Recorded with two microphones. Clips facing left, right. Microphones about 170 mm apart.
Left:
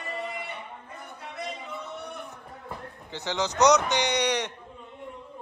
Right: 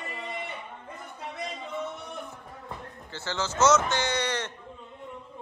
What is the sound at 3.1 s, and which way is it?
Speech, 15° left (ahead or behind).